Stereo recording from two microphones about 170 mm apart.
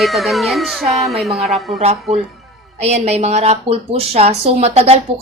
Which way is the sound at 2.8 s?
40° right (ahead or behind).